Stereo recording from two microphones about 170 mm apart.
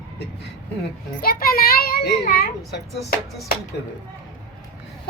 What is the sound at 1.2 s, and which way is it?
A child's voice, 60° left (ahead or behind).